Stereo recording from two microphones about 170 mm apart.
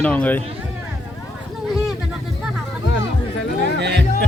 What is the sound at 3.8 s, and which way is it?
Music, 85° right.